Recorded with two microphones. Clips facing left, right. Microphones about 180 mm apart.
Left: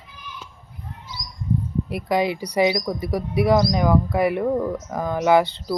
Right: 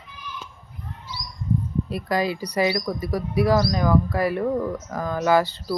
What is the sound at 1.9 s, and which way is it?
Speech, 20° left (ahead or behind).